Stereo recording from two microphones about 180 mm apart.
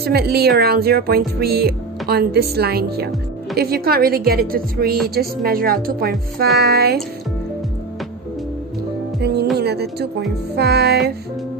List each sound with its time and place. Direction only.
0.0 s a woman's voice: 60° right (ahead or behind)
9.6 s a woman's voice: 65° right (ahead or behind)